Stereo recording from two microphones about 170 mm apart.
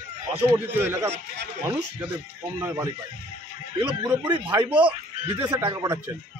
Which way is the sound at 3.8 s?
20° right (ahead or behind).